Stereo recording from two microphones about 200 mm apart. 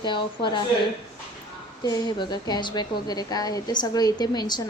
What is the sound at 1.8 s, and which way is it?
Speech, 20° left (ahead or behind).